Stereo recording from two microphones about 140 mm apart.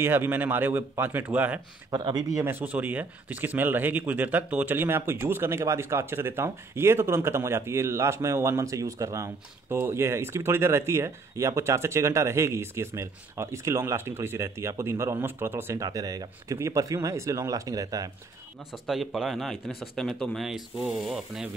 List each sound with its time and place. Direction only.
0.0 s speech: 15° right (ahead or behind)
1.9 s speech: 30° right (ahead or behind)
18.7 s speech: centre (ahead or behind)